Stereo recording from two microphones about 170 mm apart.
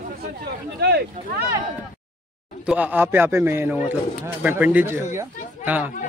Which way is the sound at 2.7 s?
10° right (ahead or behind).